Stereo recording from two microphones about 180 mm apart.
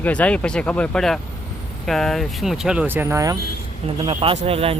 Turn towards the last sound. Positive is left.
turn(degrees=-30)  # may be behind; listen again after turning